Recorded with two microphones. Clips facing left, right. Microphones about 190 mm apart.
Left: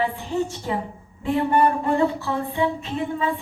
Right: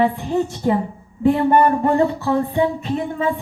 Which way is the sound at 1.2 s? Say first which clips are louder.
Right 5 dB; 50° right (ahead or behind).